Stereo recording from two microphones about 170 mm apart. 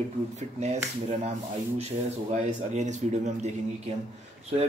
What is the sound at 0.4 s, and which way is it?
Speech, 40° right (ahead or behind).